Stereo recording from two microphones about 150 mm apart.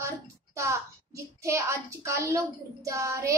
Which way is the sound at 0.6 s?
20° right (ahead or behind).